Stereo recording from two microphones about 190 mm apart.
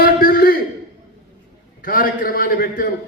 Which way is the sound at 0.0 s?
50° left (ahead or behind).